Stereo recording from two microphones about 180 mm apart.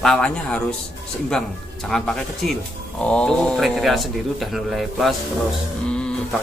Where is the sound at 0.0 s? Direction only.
5° left (ahead or behind).